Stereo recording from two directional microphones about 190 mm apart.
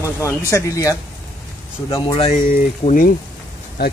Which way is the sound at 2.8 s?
45° left (ahead or behind).